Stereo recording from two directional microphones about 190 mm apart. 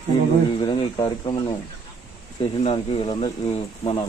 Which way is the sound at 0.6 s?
25° left (ahead or behind).